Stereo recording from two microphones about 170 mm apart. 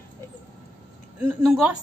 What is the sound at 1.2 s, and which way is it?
Speech, 10° right (ahead or behind).